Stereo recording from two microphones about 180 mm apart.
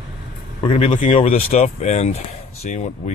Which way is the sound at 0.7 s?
40° left (ahead or behind).